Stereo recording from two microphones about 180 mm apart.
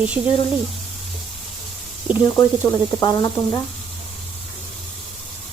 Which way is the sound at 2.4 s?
15° left (ahead or behind).